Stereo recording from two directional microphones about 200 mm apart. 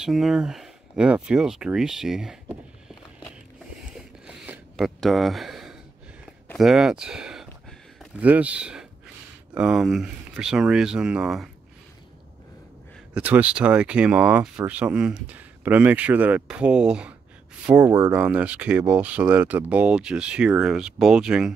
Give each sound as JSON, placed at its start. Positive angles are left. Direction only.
{"t": 0.0, "sound": "speech", "side_deg": 0}
{"t": 4.3, "sound": "a sound", "side_deg": -5}
{"t": 6.5, "sound": "speech", "side_deg": 0}
{"t": 13.1, "sound": "speech", "side_deg": -5}